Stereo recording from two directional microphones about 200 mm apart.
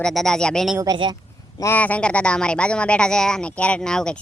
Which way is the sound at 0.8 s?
20° right (ahead or behind).